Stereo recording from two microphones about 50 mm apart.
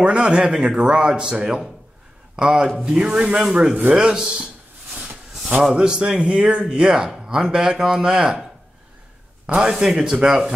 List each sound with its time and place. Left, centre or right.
0.0 s speech: right
5.6 s speech: centre
9.6 s speech: centre